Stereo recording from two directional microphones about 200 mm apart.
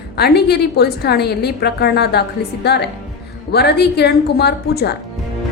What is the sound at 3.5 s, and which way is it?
A woman's voice, 55° left (ahead or behind).